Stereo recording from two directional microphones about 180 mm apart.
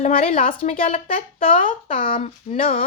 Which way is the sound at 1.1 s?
50° left (ahead or behind).